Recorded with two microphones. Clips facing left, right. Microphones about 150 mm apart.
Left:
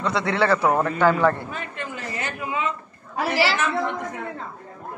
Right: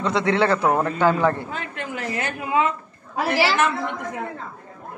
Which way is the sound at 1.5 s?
90° right.